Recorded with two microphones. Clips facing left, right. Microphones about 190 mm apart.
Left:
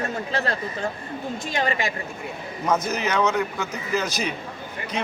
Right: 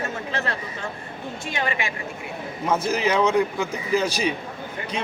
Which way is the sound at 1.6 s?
40° left (ahead or behind).